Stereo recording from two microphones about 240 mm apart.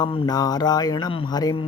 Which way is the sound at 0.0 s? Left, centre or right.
Centre.